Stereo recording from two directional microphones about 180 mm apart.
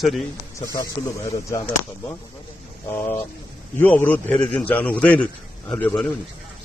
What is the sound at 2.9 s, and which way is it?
A man's voice, 10° left (ahead or behind).